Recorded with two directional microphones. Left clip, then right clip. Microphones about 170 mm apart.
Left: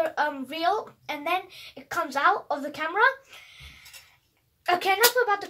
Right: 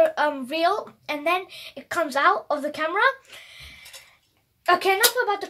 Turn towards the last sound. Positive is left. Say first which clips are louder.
# right 1 dB
turn(degrees=-40)  # may be behind; listen again after turning